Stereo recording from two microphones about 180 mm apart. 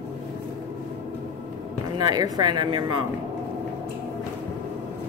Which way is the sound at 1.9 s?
20° right (ahead or behind).